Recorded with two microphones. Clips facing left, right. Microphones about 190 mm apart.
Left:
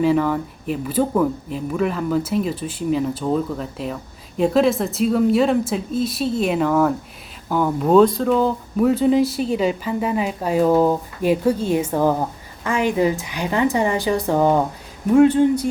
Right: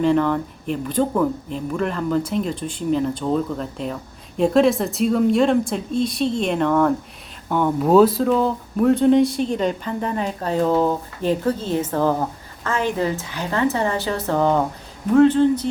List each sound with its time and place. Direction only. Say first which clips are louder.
0.0 s a woman's voice: even; 5° left (ahead or behind)